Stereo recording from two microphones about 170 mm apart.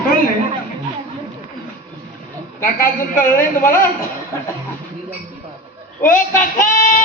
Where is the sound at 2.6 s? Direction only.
50° left (ahead or behind).